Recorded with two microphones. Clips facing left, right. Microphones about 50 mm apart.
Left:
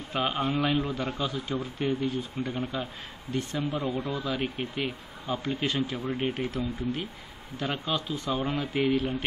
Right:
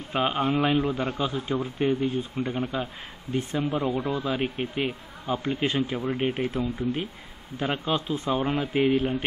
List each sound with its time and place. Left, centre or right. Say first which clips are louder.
0.1 s speech: right 3 dB; centre
2.6 s speech: right 3 dB; centre
3.8 s speech: right 4 dB; centre
6.5 s speech: right 3 dB; right